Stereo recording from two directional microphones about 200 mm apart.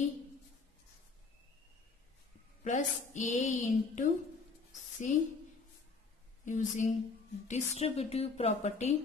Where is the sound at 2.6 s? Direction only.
40° left (ahead or behind).